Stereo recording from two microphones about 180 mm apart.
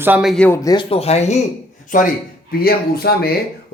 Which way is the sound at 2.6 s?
60° left (ahead or behind).